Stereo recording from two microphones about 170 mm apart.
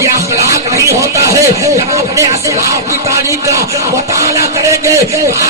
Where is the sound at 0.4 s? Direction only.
20° right (ahead or behind).